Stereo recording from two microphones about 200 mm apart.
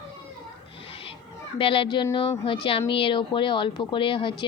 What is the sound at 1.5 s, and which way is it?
Speech, 25° left (ahead or behind).